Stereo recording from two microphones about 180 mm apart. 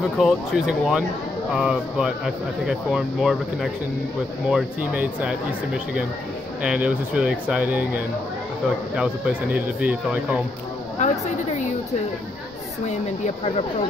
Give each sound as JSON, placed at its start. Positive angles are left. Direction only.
{"t": 0.2, "sound": "speech", "side_deg": -5}
{"t": 6.6, "sound": "speech", "side_deg": -5}
{"t": 11.0, "sound": "a sound", "side_deg": 40}
{"t": 12.8, "sound": "speech", "side_deg": 35}